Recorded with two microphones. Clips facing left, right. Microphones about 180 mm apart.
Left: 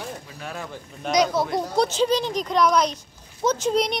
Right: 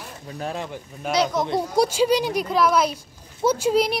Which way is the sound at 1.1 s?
10° left (ahead or behind).